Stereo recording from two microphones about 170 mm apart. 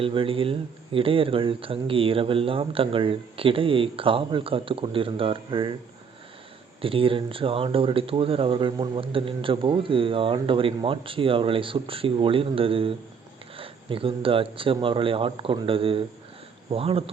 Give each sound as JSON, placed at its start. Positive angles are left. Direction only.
{"t": 0.0, "sound": "speech", "side_deg": -30}
{"t": 6.8, "sound": "speech", "side_deg": -30}